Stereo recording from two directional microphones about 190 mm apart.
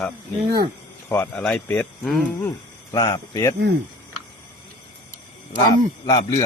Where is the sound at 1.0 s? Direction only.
10° left (ahead or behind).